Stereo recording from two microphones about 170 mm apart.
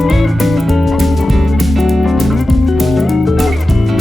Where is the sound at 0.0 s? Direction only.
Centre (ahead or behind).